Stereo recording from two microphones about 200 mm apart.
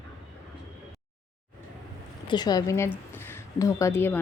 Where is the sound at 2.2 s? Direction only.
20° left (ahead or behind).